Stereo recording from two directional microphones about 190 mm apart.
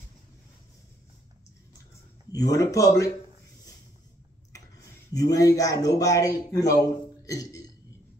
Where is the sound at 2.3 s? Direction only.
20° left (ahead or behind).